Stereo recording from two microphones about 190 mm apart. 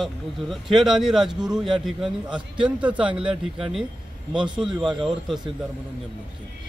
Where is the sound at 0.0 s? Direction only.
Centre (ahead or behind).